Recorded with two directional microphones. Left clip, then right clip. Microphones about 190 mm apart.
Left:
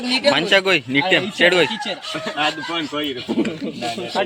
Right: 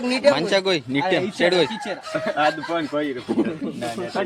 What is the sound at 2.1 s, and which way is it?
Speech, 15° right (ahead or behind).